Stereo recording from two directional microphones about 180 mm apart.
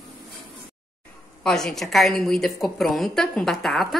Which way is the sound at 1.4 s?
5° left (ahead or behind).